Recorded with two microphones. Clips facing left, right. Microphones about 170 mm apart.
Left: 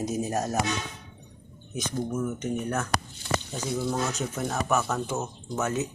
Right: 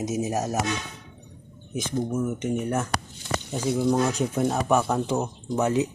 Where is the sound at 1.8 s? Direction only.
20° right (ahead or behind).